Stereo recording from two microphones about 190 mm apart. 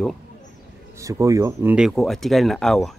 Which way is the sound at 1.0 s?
15° right (ahead or behind).